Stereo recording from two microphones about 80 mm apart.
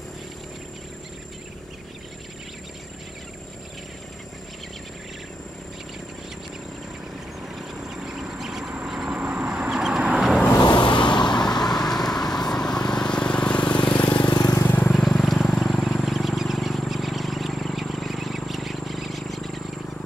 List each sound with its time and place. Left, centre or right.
7.5 s vehicle: centre
10.6 s vehicle: left
11.5 s vehicle: left
11.8 s vehicle: centre
14.2 s vehicle: left
14.6 s vehicle: left
14.9 s vehicle: centre